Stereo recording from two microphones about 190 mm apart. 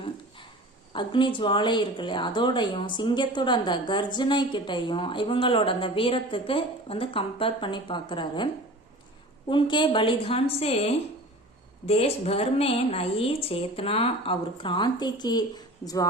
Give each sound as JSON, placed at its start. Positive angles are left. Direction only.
{"t": 0.9, "sound": "speech", "side_deg": 25}
{"t": 9.5, "sound": "speech", "side_deg": 25}